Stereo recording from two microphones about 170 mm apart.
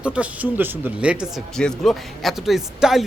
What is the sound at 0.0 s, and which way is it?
Speech, 5° right (ahead or behind).